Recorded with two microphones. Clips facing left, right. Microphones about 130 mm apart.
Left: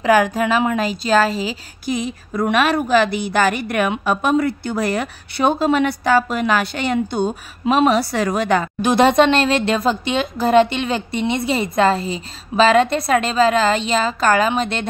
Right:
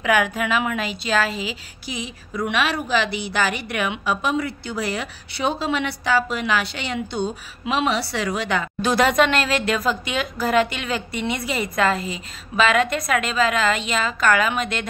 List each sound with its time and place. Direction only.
0.0 s a woman's voice: 35° left (ahead or behind)
8.8 s speech: 25° left (ahead or behind)